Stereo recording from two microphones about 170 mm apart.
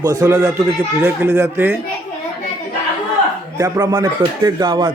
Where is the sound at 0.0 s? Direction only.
20° right (ahead or behind).